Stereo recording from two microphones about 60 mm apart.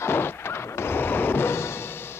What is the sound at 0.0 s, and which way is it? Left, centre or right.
Music, left.